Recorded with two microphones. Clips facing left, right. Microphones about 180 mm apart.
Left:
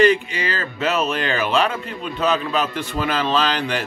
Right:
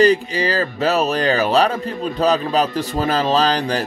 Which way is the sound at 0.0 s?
35° right (ahead or behind).